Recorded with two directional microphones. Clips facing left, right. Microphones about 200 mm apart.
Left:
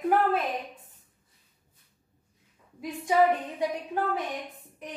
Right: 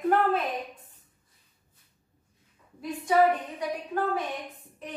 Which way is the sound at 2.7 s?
15° left (ahead or behind).